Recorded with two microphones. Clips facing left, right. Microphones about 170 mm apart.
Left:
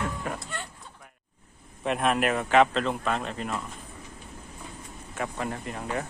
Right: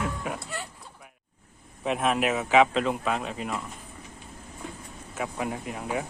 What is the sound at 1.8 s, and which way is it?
Speech, centre (ahead or behind).